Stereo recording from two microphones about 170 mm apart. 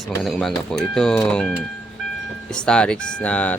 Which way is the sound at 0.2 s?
Centre (ahead or behind).